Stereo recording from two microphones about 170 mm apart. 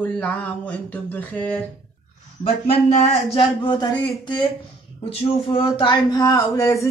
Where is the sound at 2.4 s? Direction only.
45° left (ahead or behind).